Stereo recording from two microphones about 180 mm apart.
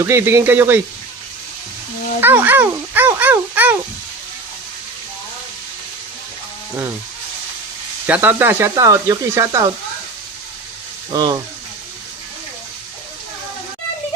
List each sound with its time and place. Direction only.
0.0 s speech: 15° right (ahead or behind)
2.2 s speech: 10° right (ahead or behind)
8.0 s speech: 10° right (ahead or behind)
11.1 s speech: 20° right (ahead or behind)